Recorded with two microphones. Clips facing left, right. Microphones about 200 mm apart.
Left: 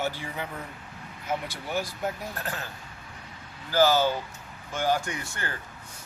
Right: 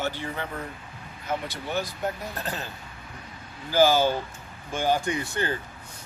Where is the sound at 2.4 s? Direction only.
20° right (ahead or behind).